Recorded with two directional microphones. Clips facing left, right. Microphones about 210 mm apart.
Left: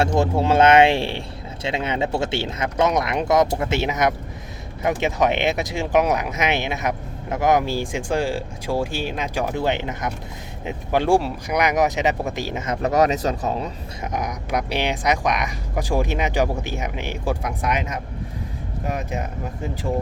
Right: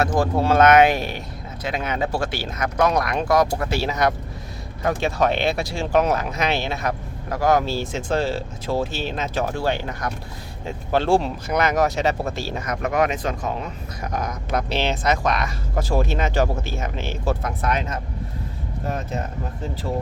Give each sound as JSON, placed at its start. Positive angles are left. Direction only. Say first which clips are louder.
{"t": 0.2, "sound": "speech", "louder": "even", "side_deg": 25}
{"t": 14.1, "sound": "speech", "louder": "even", "side_deg": 20}